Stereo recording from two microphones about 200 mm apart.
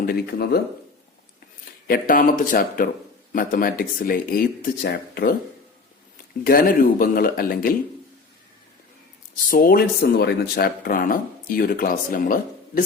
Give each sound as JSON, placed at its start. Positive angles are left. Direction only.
{"t": 0.0, "sound": "speech", "side_deg": 50}
{"t": 1.9, "sound": "speech", "side_deg": 45}
{"t": 6.4, "sound": "speech", "side_deg": 45}
{"t": 9.5, "sound": "speech", "side_deg": 45}